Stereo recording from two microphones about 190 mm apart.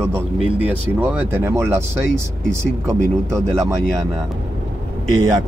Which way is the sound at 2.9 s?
15° right (ahead or behind).